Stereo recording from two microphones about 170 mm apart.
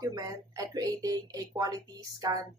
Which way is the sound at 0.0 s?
20° right (ahead or behind).